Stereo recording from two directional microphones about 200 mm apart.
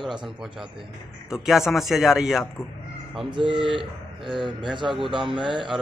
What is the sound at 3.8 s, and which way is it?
Speech, centre (ahead or behind).